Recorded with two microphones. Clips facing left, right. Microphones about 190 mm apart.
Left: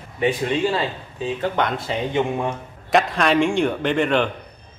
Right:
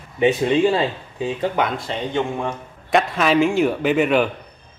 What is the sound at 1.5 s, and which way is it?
A man's voice, centre (ahead or behind).